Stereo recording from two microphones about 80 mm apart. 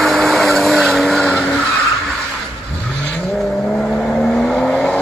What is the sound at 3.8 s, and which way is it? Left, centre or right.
Vehicle, centre.